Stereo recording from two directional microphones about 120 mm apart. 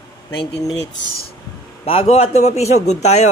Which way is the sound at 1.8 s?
60° left (ahead or behind).